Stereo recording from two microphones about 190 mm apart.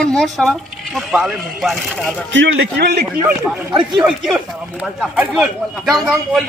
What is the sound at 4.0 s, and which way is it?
A man's voice, 5° right (ahead or behind).